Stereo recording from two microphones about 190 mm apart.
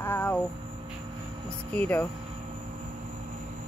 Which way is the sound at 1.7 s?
10° left (ahead or behind).